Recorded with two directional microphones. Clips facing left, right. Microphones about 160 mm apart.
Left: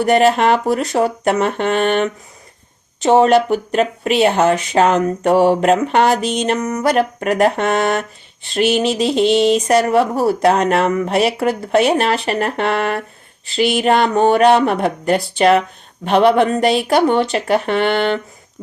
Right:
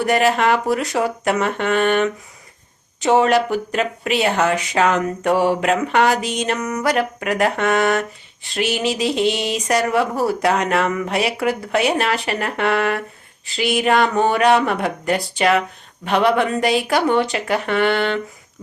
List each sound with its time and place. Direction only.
0.0 s speech: 30° left (ahead or behind)
8.9 s a sound: centre (ahead or behind)
9.6 s speech: 30° left (ahead or behind)